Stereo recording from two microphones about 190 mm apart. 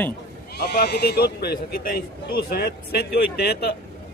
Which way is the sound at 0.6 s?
60° left (ahead or behind).